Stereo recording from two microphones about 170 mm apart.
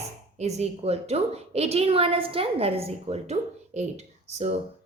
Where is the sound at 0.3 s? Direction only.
40° right (ahead or behind).